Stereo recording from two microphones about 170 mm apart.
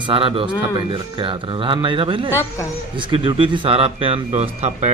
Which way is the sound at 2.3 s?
15° left (ahead or behind).